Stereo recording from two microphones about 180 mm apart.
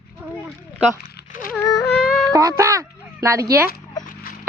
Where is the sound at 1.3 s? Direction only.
50° left (ahead or behind).